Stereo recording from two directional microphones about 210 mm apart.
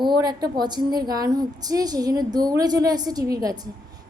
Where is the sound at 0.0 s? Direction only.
20° right (ahead or behind).